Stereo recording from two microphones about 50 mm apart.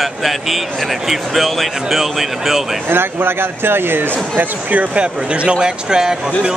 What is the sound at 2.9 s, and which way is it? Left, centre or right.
Speech, right.